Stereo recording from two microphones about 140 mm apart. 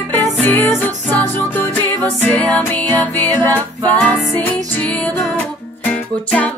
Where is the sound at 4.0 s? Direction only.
10° left (ahead or behind).